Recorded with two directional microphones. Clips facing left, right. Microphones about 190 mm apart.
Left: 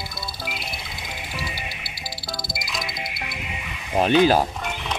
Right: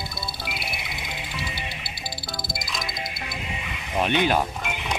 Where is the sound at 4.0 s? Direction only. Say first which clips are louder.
Left 5 dB; 35° left (ahead or behind).